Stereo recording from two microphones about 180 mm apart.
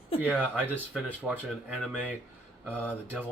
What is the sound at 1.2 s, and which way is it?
Speech, 5° right (ahead or behind).